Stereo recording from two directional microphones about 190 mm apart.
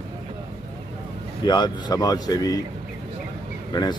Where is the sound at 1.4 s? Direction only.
20° left (ahead or behind).